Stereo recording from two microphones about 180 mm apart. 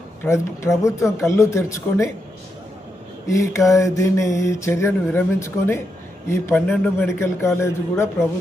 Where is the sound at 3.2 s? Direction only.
15° left (ahead or behind).